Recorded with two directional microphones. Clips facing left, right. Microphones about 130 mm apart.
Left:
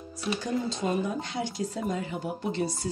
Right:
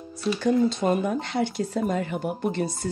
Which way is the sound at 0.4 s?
60° right (ahead or behind).